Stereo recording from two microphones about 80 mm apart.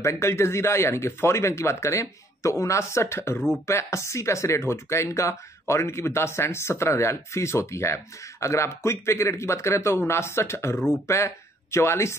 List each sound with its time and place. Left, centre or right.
0.0 s speech: left